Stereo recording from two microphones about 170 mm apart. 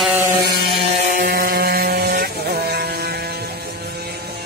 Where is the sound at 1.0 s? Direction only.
55° right (ahead or behind); by 3.5 s 70° right (ahead or behind).